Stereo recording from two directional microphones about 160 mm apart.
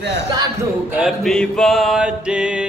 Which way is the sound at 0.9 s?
5° right (ahead or behind).